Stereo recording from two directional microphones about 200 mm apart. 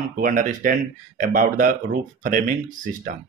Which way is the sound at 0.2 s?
40° right (ahead or behind).